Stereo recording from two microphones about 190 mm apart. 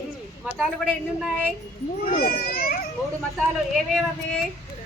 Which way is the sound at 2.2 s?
50° left (ahead or behind).